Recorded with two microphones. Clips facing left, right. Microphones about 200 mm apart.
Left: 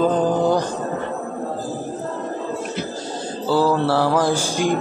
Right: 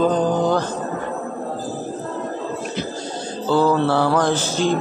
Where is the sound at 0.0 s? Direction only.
5° left (ahead or behind).